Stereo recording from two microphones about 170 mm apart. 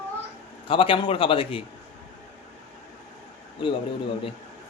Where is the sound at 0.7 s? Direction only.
30° left (ahead or behind).